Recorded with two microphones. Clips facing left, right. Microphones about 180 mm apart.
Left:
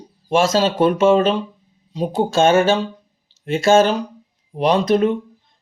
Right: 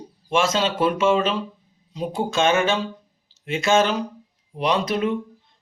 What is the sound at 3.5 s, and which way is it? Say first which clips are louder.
Speech: left 5 dB; 45° left (ahead or behind).